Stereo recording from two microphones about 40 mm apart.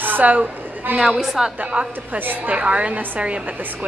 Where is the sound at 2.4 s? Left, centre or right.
Right.